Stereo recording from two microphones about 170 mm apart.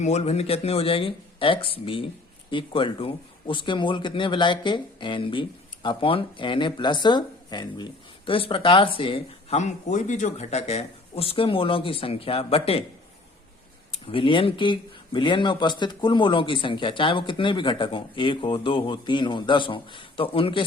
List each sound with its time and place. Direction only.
0.0 s speech: 40° left (ahead or behind)
14.1 s speech: 30° left (ahead or behind)